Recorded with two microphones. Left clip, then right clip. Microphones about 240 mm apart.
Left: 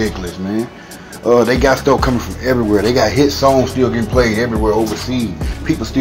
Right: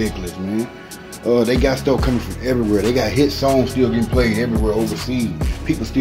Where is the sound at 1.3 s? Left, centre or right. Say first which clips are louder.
Left 5 dB; centre.